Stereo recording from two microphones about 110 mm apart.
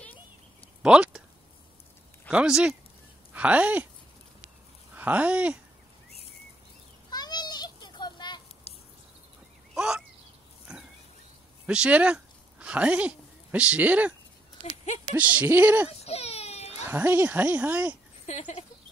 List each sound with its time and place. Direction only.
0.8 s a sound: 10° right (ahead or behind)
2.3 s speech: 5° right (ahead or behind)
4.9 s speech: 15° right (ahead or behind)
7.1 s children playing: 40° left (ahead or behind)
8.7 s a sound: 65° left (ahead or behind)
9.8 s a sound: 5° right (ahead or behind)
10.7 s pig: 5° right (ahead or behind)
11.6 s speech: 10° right (ahead or behind)
15.1 s speech: 15° right (ahead or behind)
16.0 s baby cry: 70° left (ahead or behind)
16.8 s speech: 20° right (ahead or behind)